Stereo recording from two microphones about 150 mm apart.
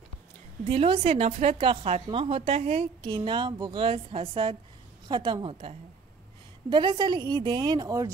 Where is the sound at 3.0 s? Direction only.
30° right (ahead or behind).